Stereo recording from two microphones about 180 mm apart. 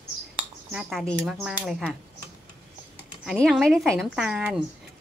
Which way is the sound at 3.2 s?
Centre (ahead or behind).